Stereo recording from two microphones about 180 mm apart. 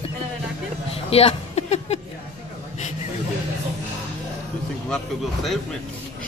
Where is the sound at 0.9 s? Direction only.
35° left (ahead or behind).